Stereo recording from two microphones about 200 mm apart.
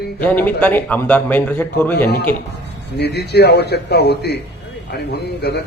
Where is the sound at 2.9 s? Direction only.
55° left (ahead or behind).